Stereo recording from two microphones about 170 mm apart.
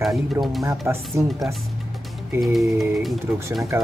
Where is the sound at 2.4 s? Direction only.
Centre (ahead or behind).